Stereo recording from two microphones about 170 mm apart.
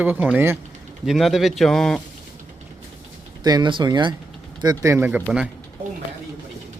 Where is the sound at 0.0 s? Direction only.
10° right (ahead or behind).